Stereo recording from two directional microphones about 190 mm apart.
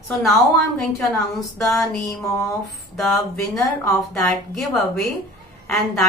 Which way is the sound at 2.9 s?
Centre (ahead or behind).